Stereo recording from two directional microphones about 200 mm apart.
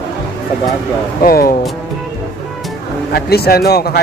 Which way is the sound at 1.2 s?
45° left (ahead or behind).